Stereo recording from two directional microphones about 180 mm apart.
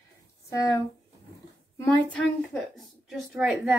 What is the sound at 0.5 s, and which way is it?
Speech, 20° left (ahead or behind).